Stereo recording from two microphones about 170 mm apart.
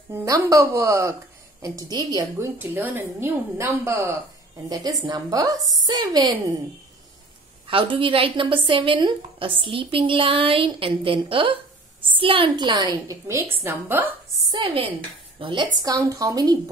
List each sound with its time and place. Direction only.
0.1 s a woman's voice: 20° right (ahead or behind)
7.6 s a woman's voice: 30° right (ahead or behind); by 14.1 s 10° right (ahead or behind)
14.5 s a woman's voice: 30° right (ahead or behind)